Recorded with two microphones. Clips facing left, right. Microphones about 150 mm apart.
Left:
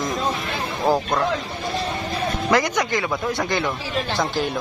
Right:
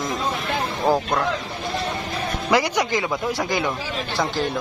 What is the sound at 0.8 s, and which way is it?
Speech, centre (ahead or behind).